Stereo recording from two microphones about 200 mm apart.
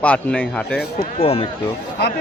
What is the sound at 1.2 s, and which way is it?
Speech, 30° left (ahead or behind).